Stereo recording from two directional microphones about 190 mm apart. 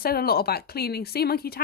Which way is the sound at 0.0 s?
55° left (ahead or behind).